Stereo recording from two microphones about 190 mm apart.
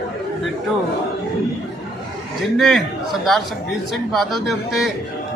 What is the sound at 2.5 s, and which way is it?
Speech, centre (ahead or behind).